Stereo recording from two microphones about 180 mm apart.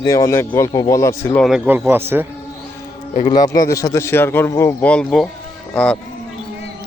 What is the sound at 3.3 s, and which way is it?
A man's voice, 20° left (ahead or behind).